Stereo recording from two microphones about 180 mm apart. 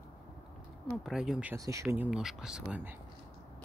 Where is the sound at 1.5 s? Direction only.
15° right (ahead or behind).